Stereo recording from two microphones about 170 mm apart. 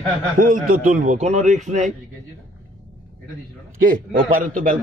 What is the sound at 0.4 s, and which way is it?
A man's voice, 50° right (ahead or behind).